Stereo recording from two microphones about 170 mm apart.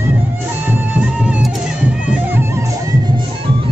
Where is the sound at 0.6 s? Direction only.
10° right (ahead or behind).